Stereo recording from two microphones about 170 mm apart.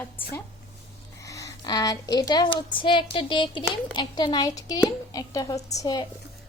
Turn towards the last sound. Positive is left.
turn(degrees=20)  # may be behind; listen again after turning